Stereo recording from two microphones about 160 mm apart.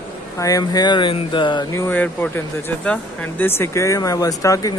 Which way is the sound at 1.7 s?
15° left (ahead or behind).